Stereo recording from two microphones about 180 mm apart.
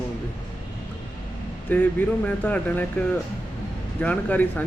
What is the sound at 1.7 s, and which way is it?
Speech, 10° left (ahead or behind).